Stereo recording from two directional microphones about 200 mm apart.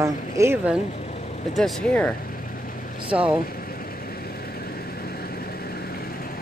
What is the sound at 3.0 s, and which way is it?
Speech, 5° right (ahead or behind).